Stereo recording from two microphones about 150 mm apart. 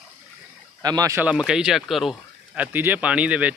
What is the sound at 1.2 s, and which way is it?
Speech, 5° right (ahead or behind).